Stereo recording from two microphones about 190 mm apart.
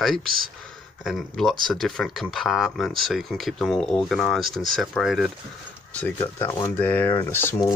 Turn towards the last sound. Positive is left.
turn(degrees=10)  # may be behind; listen again after turning